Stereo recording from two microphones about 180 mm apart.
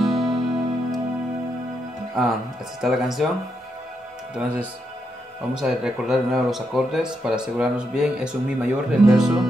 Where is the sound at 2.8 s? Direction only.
Centre (ahead or behind).